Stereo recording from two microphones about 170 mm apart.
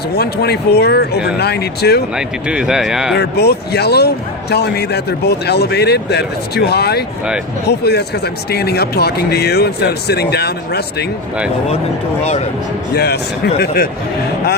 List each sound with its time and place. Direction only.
0.2 s speech: 70° left (ahead or behind)
2.1 s speech: 5° right (ahead or behind)
3.2 s speech: 75° left (ahead or behind)
12.9 s speech: 70° left (ahead or behind)